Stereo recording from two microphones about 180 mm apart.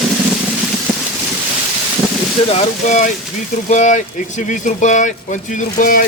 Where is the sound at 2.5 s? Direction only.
40° left (ahead or behind).